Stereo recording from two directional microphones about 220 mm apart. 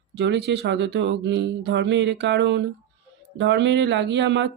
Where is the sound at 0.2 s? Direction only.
50° right (ahead or behind).